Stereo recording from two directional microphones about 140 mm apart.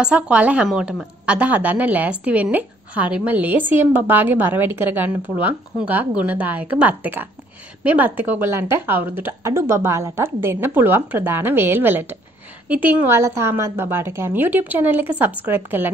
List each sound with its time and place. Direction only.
0.0 s a woman's voice: 10° right (ahead or behind)